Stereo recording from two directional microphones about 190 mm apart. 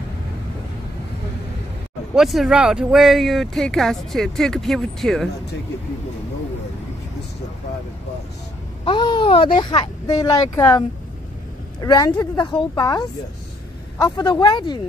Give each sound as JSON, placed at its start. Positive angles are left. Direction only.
{"t": 2.1, "sound": "speech", "side_deg": 0}
{"t": 8.8, "sound": "speech", "side_deg": 25}
{"t": 11.8, "sound": "speech", "side_deg": 20}